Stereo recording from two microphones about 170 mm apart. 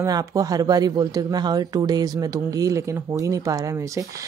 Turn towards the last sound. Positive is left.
turn(degrees=-20)  # may be behind; listen again after turning